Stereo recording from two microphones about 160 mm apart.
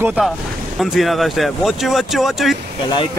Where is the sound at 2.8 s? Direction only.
30° left (ahead or behind).